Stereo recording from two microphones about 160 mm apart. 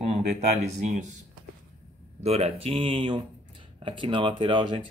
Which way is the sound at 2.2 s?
40° right (ahead or behind).